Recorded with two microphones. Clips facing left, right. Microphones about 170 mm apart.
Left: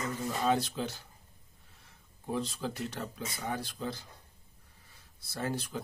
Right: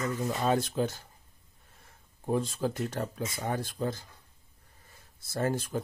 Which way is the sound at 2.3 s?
50° right (ahead or behind).